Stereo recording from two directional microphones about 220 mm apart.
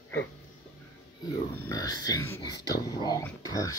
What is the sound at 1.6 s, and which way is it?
Speech, 15° left (ahead or behind).